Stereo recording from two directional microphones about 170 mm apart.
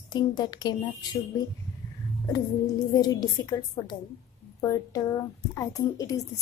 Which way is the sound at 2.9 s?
20° left (ahead or behind).